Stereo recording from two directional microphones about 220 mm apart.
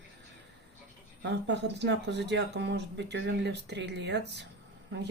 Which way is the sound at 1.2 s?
50° right (ahead or behind).